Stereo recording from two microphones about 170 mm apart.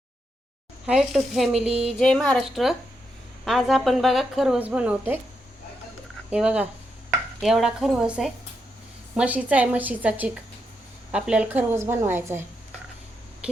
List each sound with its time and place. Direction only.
0.9 s a woman's voice: 5° right (ahead or behind)
6.3 s a woman's voice: 5° right (ahead or behind)
13.4 s a sound: 5° right (ahead or behind)